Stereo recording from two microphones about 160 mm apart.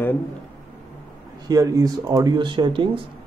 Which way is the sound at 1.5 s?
20° right (ahead or behind).